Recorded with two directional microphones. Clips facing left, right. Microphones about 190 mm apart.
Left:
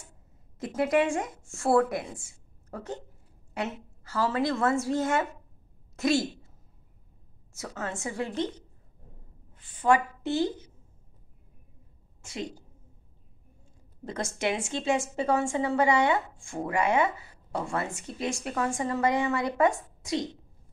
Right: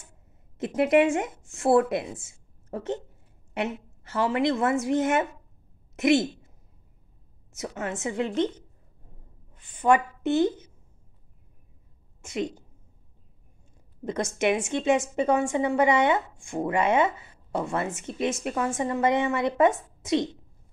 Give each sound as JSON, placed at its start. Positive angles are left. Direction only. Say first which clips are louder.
{"t": 0.6, "sound": "a woman's voice", "louder": "right 4 dB", "side_deg": -25}
{"t": 7.5, "sound": "a woman's voice", "louder": "right 3 dB", "side_deg": -20}
{"t": 12.2, "sound": "a woman's voice", "louder": "right 6 dB", "side_deg": -20}
{"t": 14.0, "sound": "a woman's voice", "louder": "right 5 dB", "side_deg": -20}